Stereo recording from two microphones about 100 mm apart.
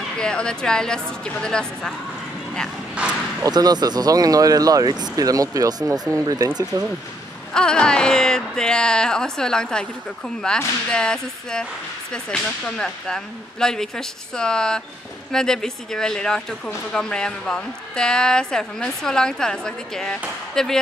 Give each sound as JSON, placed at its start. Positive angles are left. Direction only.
{"t": 0.2, "sound": "speech", "side_deg": 10}
{"t": 2.9, "sound": "bow-wow", "side_deg": -10}
{"t": 3.4, "sound": "speech", "side_deg": -40}
{"t": 7.5, "sound": "speech", "side_deg": 10}